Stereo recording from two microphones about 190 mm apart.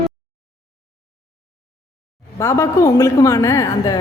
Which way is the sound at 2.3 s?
15° left (ahead or behind).